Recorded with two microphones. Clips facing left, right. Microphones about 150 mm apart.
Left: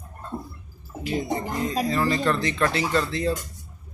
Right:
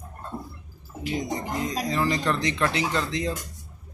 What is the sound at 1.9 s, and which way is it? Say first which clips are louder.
Speech: left 1 dB; 15° right (ahead or behind).